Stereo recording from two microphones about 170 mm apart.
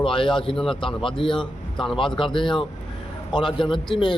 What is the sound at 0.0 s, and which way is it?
A man's voice, 30° left (ahead or behind).